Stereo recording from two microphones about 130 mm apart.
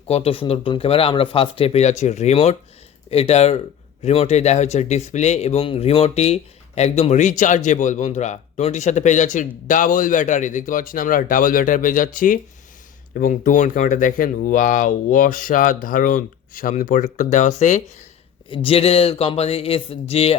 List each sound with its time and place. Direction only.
0.1 s speech: 45° left (ahead or behind); by 17.9 s 65° left (ahead or behind)
18.4 s speech: 45° left (ahead or behind)